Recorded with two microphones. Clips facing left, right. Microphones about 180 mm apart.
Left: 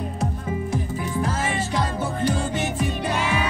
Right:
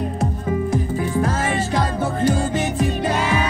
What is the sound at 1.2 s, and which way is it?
Music, 45° right (ahead or behind).